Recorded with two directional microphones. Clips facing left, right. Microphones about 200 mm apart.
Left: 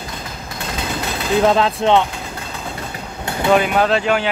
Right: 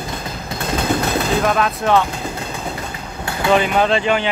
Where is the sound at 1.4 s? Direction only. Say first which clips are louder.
Left 3 dB; 25° left (ahead or behind).